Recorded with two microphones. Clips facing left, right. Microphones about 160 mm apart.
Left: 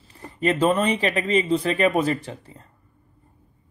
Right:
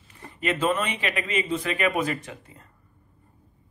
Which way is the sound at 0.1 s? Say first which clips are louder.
Left 5 dB; 35° left (ahead or behind).